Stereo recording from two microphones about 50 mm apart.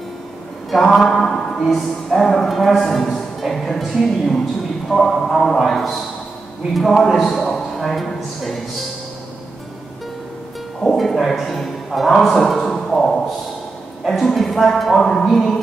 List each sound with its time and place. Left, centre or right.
0.7 s a sound: centre
1.6 s a man's voice: centre
10.8 s speech: centre